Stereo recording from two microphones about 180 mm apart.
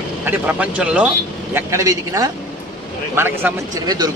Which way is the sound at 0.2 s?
10° right (ahead or behind).